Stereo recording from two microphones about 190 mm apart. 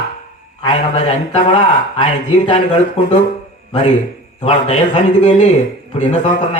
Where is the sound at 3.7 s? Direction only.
30° left (ahead or behind).